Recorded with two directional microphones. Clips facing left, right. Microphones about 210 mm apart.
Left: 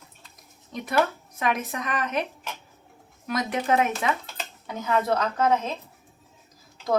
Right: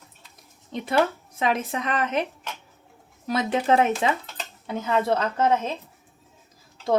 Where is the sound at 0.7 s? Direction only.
25° right (ahead or behind).